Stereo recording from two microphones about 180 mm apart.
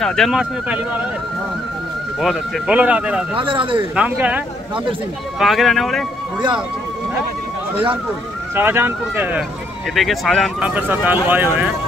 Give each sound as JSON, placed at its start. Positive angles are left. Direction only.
{"t": 0.0, "sound": "speech", "side_deg": 5}
{"t": 2.1, "sound": "speech", "side_deg": -5}
{"t": 3.3, "sound": "speech", "side_deg": -30}
{"t": 3.9, "sound": "speech", "side_deg": -5}
{"t": 5.4, "sound": "speech", "side_deg": 0}
{"t": 7.7, "sound": "speech", "side_deg": -30}
{"t": 8.5, "sound": "speech", "side_deg": -10}
{"t": 9.9, "sound": "speech", "side_deg": 0}